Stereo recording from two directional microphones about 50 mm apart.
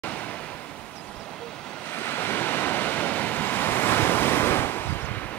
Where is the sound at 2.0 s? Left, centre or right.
Left.